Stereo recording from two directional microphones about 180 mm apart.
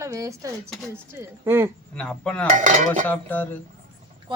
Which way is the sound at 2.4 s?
45° right (ahead or behind).